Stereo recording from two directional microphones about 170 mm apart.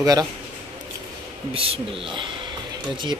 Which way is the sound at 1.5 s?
35° right (ahead or behind).